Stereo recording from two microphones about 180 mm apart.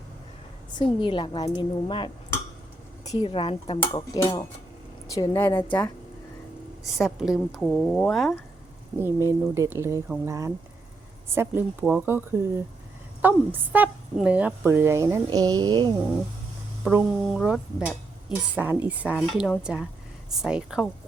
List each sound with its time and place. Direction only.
0.7 s a woman's voice: 25° left (ahead or behind)
6.9 s speech: centre (ahead or behind)
9.0 s a woman's voice: 15° right (ahead or behind)
17.2 s speech: centre (ahead or behind)